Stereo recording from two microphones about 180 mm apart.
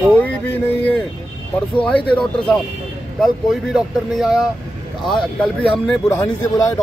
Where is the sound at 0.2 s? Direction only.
10° left (ahead or behind).